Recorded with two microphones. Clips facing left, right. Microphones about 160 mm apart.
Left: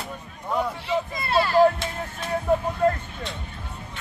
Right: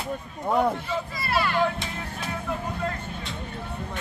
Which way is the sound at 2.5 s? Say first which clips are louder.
Left 11 dB; 40° left (ahead or behind).